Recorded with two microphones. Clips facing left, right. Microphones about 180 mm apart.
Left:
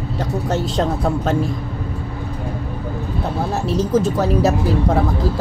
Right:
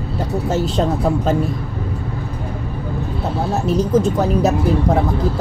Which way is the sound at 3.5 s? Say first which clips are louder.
Right 2 dB; centre (ahead or behind).